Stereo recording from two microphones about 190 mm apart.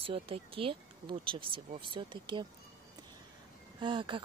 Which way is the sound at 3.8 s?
25° right (ahead or behind).